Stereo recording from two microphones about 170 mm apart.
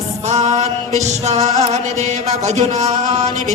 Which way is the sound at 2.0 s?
45° right (ahead or behind).